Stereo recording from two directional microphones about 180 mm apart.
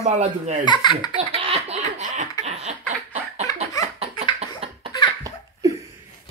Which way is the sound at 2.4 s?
40° right (ahead or behind).